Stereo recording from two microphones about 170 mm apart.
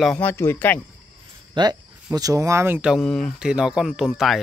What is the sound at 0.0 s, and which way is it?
Speech, 10° left (ahead or behind).